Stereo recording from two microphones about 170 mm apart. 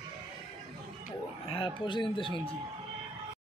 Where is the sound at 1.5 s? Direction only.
30° left (ahead or behind).